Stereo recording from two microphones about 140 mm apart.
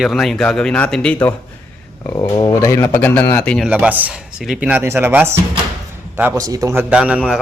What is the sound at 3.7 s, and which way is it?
A man's voice, 10° right (ahead or behind).